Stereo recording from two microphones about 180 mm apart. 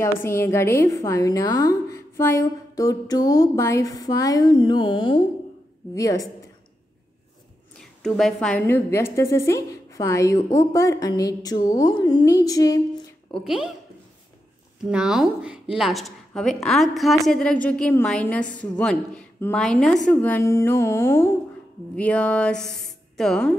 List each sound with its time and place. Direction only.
0.0 s a woman's voice: 15° left (ahead or behind)
8.0 s a woman's voice: 5° left (ahead or behind); by 12.8 s 20° left (ahead or behind)
13.3 s a woman's voice: 5° right (ahead or behind)
14.9 s a woman's voice: 5° right (ahead or behind)